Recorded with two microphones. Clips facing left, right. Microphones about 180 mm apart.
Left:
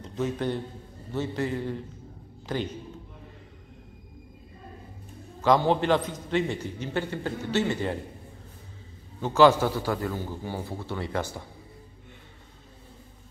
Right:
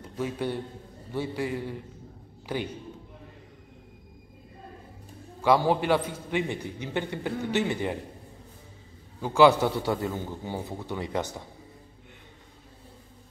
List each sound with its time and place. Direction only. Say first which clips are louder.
0.0 s a man's voice: left 2 dB; 10° right (ahead or behind)
5.7 s a man's voice: left 1 dB; 10° right (ahead or behind)
9.2 s a man's voice: even; 10° right (ahead or behind)